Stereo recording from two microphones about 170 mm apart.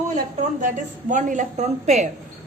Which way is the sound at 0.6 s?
50° right (ahead or behind).